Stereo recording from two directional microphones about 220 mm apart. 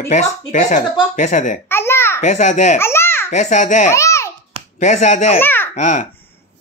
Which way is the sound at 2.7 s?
10° left (ahead or behind).